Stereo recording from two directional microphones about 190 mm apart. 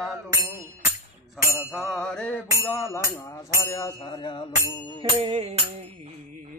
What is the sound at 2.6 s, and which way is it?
Speech, 15° left (ahead or behind).